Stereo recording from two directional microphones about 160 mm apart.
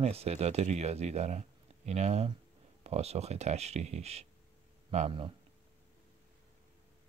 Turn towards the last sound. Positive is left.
turn(degrees=-35)  # may be behind; listen again after turning